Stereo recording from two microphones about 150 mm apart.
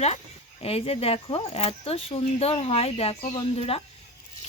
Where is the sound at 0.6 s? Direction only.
40° left (ahead or behind).